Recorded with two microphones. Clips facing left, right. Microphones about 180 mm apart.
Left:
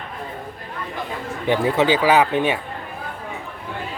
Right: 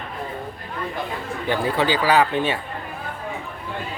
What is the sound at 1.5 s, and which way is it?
Speech, 20° left (ahead or behind).